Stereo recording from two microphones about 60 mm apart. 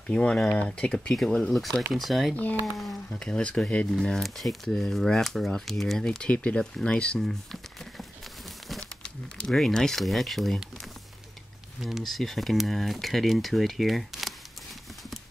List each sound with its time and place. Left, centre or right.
0.0 s speech: left; by 2.3 s centre
3.1 s speech: centre
4.0 s speech: centre
9.5 s speech: centre
11.8 s speech: centre